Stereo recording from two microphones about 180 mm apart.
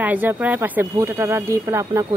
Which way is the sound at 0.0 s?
10° right (ahead or behind).